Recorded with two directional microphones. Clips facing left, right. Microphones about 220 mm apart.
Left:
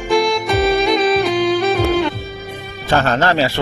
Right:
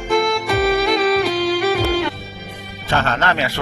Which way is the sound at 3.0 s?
35° left (ahead or behind).